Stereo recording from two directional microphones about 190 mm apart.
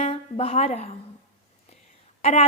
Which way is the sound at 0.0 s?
30° left (ahead or behind).